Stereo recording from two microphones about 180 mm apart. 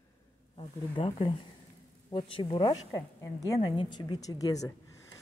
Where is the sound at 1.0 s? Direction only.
30° left (ahead or behind).